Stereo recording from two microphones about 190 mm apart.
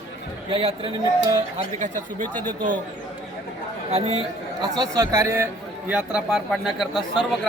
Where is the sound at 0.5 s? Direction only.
30° right (ahead or behind).